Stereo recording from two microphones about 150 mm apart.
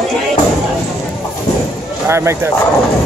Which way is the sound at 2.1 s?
20° right (ahead or behind).